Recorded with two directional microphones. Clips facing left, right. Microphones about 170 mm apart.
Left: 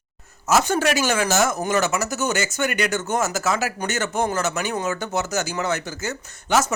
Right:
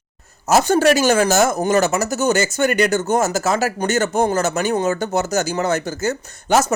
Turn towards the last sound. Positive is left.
turn(degrees=-40)  # may be behind; listen again after turning